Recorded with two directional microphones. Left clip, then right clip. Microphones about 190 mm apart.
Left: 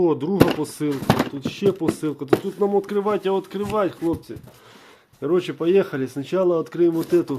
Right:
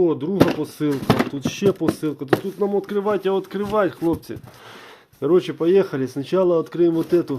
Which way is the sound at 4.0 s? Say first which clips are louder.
Right 2 dB; 25° right (ahead or behind).